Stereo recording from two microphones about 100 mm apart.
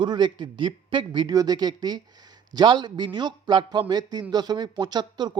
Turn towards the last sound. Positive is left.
turn(degrees=-45)  # may be behind; listen again after turning